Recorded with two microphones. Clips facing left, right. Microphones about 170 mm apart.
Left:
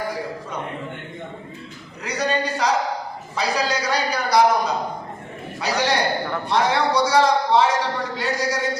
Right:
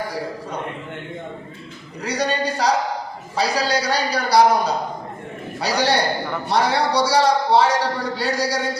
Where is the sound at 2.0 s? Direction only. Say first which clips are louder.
Right 1 dB; 35° right (ahead or behind).